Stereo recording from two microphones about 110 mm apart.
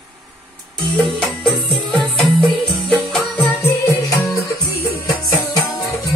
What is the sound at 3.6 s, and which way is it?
Music, 25° left (ahead or behind).